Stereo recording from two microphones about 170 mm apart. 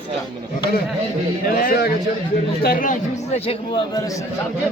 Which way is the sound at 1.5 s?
55° left (ahead or behind).